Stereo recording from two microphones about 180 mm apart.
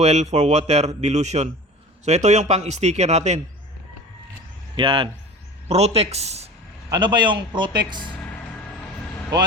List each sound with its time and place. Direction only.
0.0 s speech: 40° right (ahead or behind)
4.8 s a man's voice: 30° right (ahead or behind)
6.9 s a man's voice: 25° right (ahead or behind)